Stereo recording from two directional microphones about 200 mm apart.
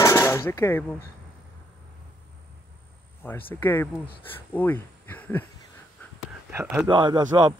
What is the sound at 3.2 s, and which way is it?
Speech, 10° left (ahead or behind).